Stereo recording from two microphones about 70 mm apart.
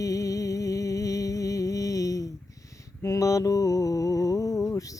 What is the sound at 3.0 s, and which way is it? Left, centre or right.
Mantra, left.